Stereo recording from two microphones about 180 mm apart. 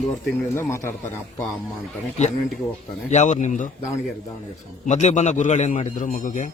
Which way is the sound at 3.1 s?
40° left (ahead or behind).